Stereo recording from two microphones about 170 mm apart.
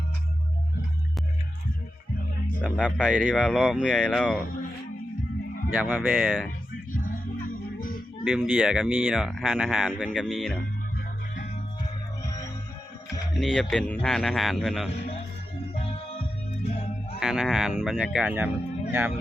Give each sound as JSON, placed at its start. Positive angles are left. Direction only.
{"t": 2.6, "sound": "speech", "side_deg": 5}
{"t": 5.7, "sound": "speech", "side_deg": -10}
{"t": 6.9, "sound": "music", "side_deg": 55}
{"t": 8.2, "sound": "speech", "side_deg": -5}
{"t": 12.2, "sound": "music", "side_deg": 20}
{"t": 13.3, "sound": "speech", "side_deg": 0}
{"t": 15.7, "sound": "music", "side_deg": 35}
{"t": 17.2, "sound": "speech", "side_deg": -5}